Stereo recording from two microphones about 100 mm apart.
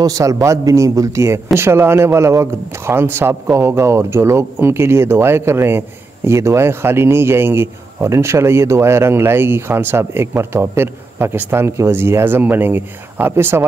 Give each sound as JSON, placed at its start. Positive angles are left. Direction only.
{"t": 0.0, "sound": "a man's voice", "side_deg": -35}